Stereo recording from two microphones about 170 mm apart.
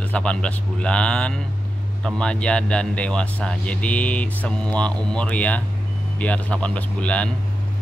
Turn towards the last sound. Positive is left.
turn(degrees=5)  # may be behind; listen again after turning